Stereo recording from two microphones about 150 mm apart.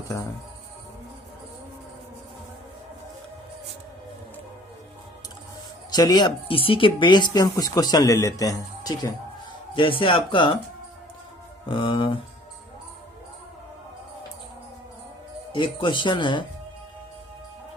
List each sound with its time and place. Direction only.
5.9 s speech: 25° left (ahead or behind)
9.7 s speech: 35° left (ahead or behind)
11.7 s speech: 35° left (ahead or behind)
15.5 s speech: 35° left (ahead or behind)